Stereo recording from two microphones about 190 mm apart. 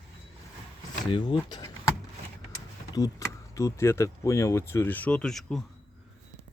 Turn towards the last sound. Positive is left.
turn(degrees=0)  # may be behind; listen again after turning